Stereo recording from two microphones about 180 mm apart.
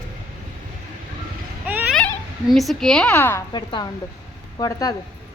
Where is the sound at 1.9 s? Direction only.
5° left (ahead or behind).